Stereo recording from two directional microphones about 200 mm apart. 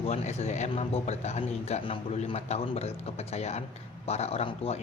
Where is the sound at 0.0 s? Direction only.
35° left (ahead or behind).